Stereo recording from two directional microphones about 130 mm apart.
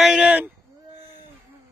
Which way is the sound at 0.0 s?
5° right (ahead or behind).